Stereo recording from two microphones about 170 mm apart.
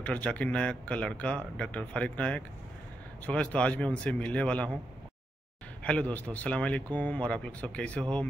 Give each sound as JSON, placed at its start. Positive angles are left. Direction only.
{"t": 0.0, "sound": "speech", "side_deg": 10}
{"t": 5.9, "sound": "speech", "side_deg": 10}